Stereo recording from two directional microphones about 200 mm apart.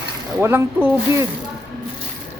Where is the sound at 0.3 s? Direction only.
10° right (ahead or behind).